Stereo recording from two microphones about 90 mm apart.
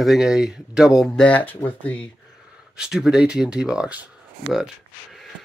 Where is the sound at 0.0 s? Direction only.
5° right (ahead or behind).